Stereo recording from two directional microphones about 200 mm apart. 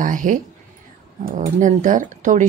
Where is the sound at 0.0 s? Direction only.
40° right (ahead or behind).